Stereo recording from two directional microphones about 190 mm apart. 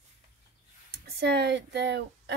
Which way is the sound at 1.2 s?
60° right (ahead or behind).